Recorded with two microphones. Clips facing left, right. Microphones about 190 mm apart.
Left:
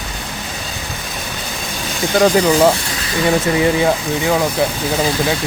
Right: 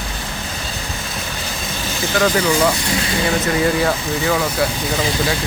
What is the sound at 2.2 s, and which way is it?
Speech, 30° left (ahead or behind).